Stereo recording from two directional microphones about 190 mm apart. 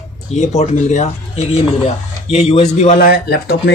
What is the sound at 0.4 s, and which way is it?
Speech, 40° left (ahead or behind).